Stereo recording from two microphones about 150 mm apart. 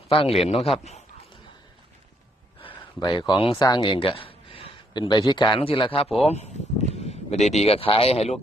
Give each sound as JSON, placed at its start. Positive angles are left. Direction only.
{"t": 0.1, "sound": "a man's voice", "side_deg": 40}
{"t": 2.7, "sound": "speech", "side_deg": 30}
{"t": 6.2, "sound": "speech", "side_deg": 45}